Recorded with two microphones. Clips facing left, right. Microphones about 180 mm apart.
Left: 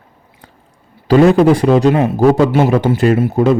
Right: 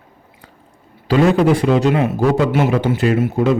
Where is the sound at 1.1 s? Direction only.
35° left (ahead or behind).